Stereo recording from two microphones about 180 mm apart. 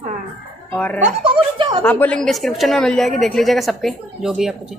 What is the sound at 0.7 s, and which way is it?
Speech, 5° left (ahead or behind).